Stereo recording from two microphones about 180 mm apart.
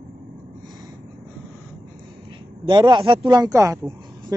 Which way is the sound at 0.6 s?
20° right (ahead or behind).